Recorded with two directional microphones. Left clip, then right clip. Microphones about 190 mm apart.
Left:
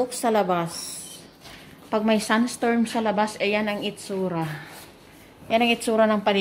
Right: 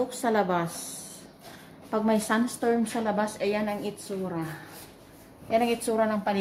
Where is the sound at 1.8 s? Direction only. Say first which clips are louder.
Left 4 dB; 10° left (ahead or behind).